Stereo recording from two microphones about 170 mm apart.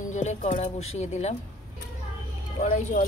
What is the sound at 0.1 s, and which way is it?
Speech, 45° left (ahead or behind).